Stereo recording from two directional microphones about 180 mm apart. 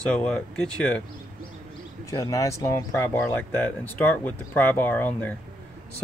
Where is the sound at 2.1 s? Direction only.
20° left (ahead or behind).